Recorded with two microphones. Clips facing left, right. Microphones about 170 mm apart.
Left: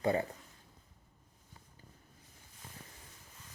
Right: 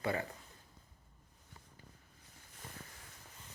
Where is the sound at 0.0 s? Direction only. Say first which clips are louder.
Left 5 dB; 30° left (ahead or behind).